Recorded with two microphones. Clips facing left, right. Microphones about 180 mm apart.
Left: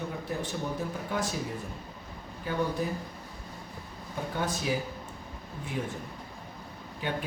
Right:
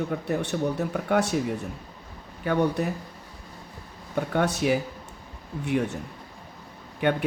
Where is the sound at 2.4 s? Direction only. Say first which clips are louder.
Right 6 dB; 70° right (ahead or behind).